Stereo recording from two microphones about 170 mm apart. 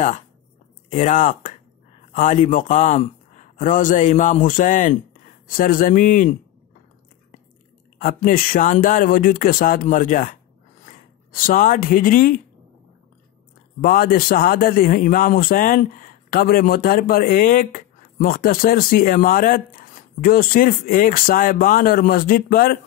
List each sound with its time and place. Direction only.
0.8 s a man's voice: 45° left (ahead or behind)
8.0 s a man's voice: 55° left (ahead or behind)
11.4 s a man's voice: 55° left (ahead or behind)
13.7 s a man's voice: 55° left (ahead or behind)